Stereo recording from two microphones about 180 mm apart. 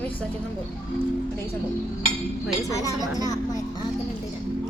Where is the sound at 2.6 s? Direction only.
20° left (ahead or behind).